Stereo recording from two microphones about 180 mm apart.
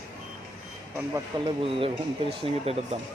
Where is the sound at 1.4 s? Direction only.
30° right (ahead or behind).